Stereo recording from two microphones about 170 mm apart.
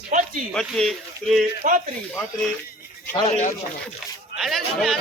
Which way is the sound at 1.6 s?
50° right (ahead or behind).